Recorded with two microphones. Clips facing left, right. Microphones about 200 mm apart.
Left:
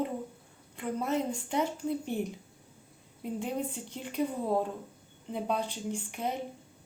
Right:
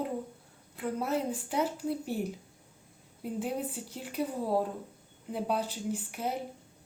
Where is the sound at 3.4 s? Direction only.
5° right (ahead or behind).